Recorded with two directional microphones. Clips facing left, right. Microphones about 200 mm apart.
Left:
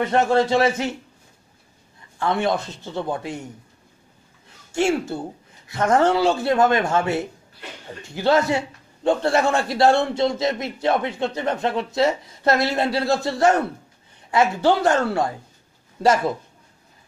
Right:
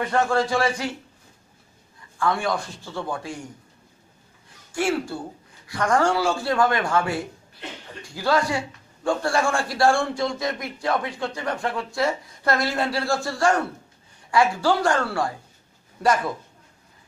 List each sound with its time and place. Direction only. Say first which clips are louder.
0.0 s a man's voice: left 4 dB; 20° left (ahead or behind)
2.1 s a man's voice: left 2 dB; 25° left (ahead or behind)
4.7 s a man's voice: left 3 dB; 25° left (ahead or behind)